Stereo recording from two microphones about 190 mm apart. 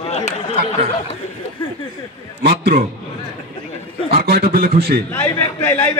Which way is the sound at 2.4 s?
55° right (ahead or behind).